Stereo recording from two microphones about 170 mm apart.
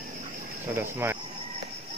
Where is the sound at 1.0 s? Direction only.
15° right (ahead or behind).